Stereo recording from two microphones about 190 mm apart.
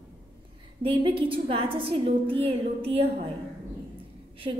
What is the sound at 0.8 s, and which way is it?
A woman's voice, 30° right (ahead or behind).